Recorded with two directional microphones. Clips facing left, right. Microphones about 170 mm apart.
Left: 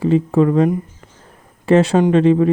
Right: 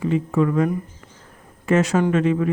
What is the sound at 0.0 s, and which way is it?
Speech, 35° left (ahead or behind).